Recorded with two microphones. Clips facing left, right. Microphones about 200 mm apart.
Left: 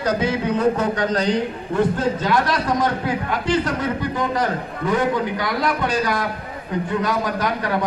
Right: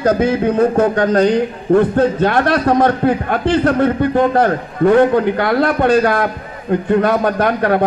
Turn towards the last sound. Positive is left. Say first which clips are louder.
# right 8 dB
turn(degrees=-60)  # may be behind; listen again after turning